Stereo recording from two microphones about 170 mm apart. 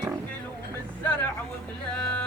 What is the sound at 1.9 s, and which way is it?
Music, 5° left (ahead or behind).